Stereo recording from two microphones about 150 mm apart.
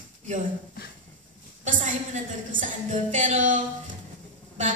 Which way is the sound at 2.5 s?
60° right (ahead or behind).